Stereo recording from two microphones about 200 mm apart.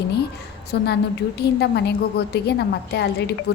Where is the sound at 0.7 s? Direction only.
55° left (ahead or behind).